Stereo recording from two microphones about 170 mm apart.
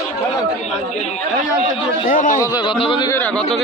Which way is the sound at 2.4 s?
20° left (ahead or behind).